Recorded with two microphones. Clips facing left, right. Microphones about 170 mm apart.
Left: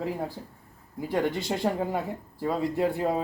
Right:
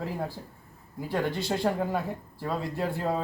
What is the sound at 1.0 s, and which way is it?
Speech, 20° left (ahead or behind).